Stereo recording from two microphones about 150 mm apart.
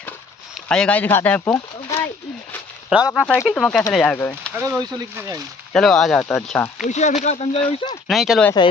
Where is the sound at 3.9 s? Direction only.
10° left (ahead or behind).